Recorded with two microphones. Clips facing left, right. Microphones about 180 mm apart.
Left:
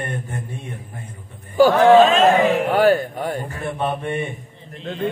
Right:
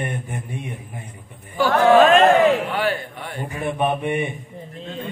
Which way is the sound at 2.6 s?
45° left (ahead or behind).